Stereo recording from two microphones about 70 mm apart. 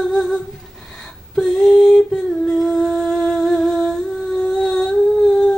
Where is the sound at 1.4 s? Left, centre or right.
Centre.